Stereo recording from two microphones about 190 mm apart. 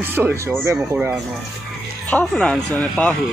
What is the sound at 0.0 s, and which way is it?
Speech, 10° right (ahead or behind).